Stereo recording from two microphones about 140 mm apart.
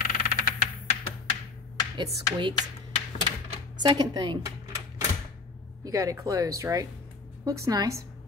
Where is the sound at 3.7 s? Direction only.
30° right (ahead or behind).